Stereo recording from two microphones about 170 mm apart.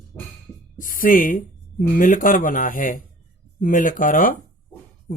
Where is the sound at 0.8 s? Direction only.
55° left (ahead or behind).